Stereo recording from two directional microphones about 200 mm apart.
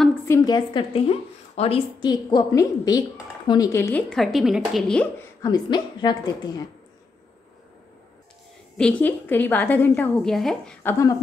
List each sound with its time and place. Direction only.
0.0 s a woman's voice: 10° left (ahead or behind)
4.1 s a woman's voice: centre (ahead or behind)
5.4 s a woman's voice: 20° left (ahead or behind)
8.7 s a woman's voice: 5° left (ahead or behind)